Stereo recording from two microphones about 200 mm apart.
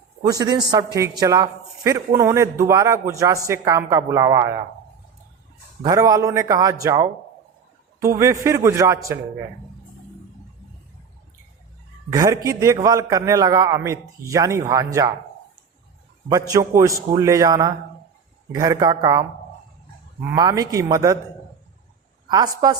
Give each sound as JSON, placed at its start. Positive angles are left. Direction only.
{"t": 0.2, "sound": "a man's voice", "side_deg": -20}
{"t": 5.8, "sound": "a man's voice", "side_deg": -15}
{"t": 8.4, "sound": "a man's voice", "side_deg": -15}
{"t": 12.1, "sound": "a man's voice", "side_deg": -15}
{"t": 16.3, "sound": "a man's voice", "side_deg": -15}
{"t": 20.3, "sound": "a man's voice", "side_deg": -20}
{"t": 22.3, "sound": "a man's voice", "side_deg": -20}